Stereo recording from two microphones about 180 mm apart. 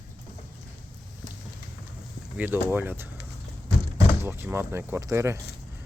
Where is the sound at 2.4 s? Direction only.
10° right (ahead or behind).